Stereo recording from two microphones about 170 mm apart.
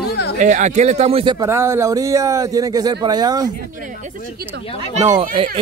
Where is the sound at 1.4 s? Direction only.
15° right (ahead or behind).